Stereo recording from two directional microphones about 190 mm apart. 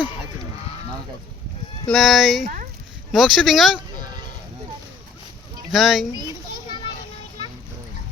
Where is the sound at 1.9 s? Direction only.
Centre (ahead or behind).